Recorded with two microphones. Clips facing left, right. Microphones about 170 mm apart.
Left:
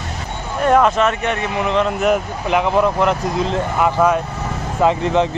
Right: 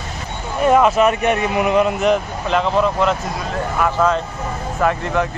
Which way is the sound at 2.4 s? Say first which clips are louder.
Left 2 dB; 15° left (ahead or behind).